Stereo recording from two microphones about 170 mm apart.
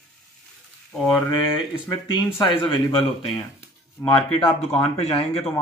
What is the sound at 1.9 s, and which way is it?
Speech, 25° left (ahead or behind).